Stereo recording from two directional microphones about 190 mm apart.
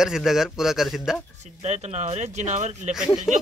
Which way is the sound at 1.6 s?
35° right (ahead or behind).